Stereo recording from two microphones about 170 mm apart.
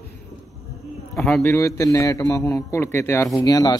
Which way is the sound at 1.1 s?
Centre (ahead or behind).